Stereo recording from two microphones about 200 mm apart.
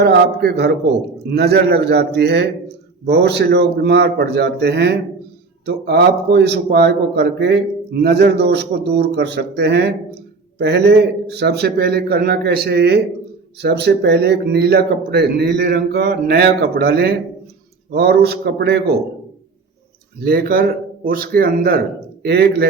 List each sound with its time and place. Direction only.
0.0 s a man's voice: 55° right (ahead or behind)
20.1 s a man's voice: 50° right (ahead or behind)